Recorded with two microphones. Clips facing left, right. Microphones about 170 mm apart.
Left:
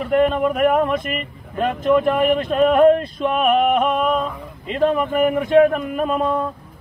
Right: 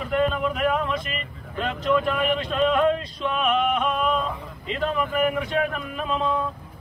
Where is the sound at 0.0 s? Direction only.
50° left (ahead or behind).